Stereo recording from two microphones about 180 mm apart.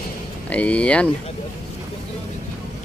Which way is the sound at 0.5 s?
5° left (ahead or behind).